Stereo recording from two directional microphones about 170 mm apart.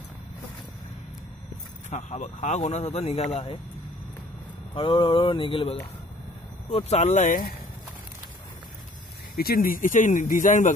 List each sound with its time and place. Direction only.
1.9 s speech: 45° left (ahead or behind)
4.7 s speech: 30° left (ahead or behind); by 7.5 s 50° left (ahead or behind)
9.3 s speech: 60° left (ahead or behind)